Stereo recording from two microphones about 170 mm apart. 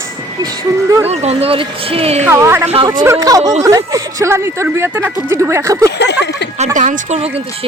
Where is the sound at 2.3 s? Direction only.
15° right (ahead or behind).